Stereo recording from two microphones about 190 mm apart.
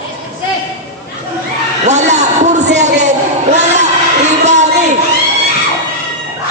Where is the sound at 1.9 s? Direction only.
35° right (ahead or behind).